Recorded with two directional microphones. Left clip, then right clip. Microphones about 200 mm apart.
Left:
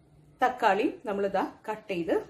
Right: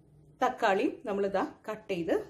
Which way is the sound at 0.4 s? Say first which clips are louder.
Left 3 dB; 20° right (ahead or behind).